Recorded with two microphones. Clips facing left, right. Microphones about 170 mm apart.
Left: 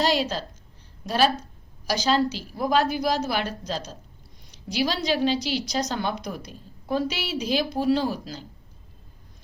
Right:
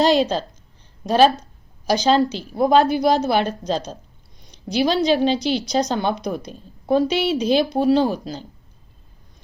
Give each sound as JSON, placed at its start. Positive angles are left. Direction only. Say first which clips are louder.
{"t": 0.0, "sound": "a woman's voice", "louder": "right 7 dB", "side_deg": -25}
{"t": 1.9, "sound": "a woman's voice", "louder": "right 6 dB", "side_deg": -25}